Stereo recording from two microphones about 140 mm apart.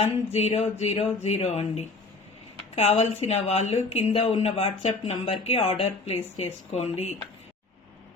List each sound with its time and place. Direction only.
0.0 s speech: 50° left (ahead or behind)